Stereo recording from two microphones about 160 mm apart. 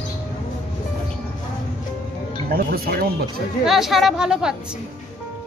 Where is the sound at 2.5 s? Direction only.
70° right (ahead or behind).